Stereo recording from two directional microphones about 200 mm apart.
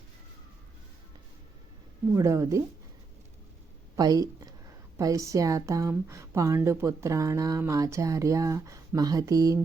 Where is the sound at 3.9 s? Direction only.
15° right (ahead or behind).